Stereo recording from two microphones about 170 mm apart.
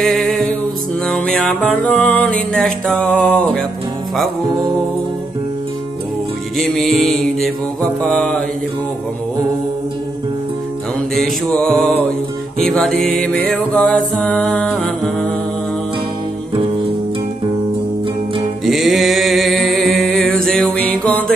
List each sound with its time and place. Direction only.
0.0 s music: centre (ahead or behind)
6.6 s music: centre (ahead or behind)
11.1 s music: 5° left (ahead or behind)
18.7 s a sound: centre (ahead or behind)